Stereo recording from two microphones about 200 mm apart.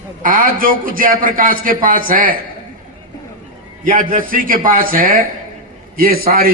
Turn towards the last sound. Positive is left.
turn(degrees=-45)  # may be behind; listen again after turning